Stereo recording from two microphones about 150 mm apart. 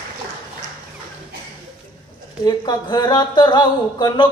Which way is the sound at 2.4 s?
30° left (ahead or behind).